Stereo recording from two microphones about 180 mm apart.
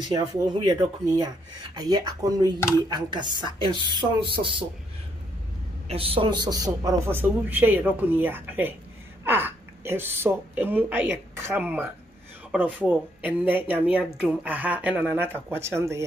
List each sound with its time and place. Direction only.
0.1 s speech: 20° right (ahead or behind)
5.9 s speech: 30° right (ahead or behind); by 16.0 s 15° right (ahead or behind)